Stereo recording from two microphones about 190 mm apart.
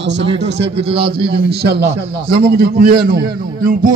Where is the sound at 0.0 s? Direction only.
70° right (ahead or behind).